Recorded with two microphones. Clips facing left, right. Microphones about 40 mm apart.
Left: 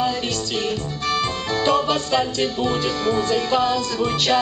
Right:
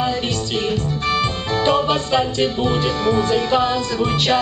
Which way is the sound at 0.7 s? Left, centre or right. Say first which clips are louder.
Right 3 dB; right.